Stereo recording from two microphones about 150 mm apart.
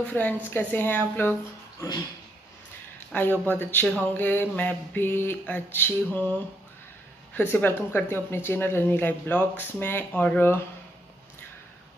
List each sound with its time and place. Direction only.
0.0 s speech: 10° left (ahead or behind)
3.1 s speech: 10° left (ahead or behind)
7.5 s speech: 15° left (ahead or behind)